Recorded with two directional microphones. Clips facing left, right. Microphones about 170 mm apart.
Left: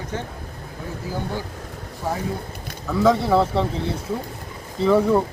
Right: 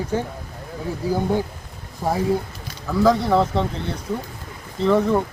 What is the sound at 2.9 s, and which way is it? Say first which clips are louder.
Speech: even; centre (ahead or behind).